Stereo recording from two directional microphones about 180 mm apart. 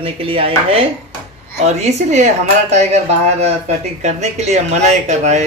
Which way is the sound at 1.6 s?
40° right (ahead or behind).